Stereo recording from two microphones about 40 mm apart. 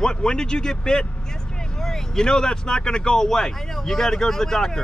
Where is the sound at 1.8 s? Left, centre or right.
Centre.